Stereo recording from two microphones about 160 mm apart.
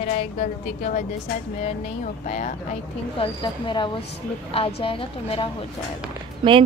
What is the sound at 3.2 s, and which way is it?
A woman's voice, 30° left (ahead or behind).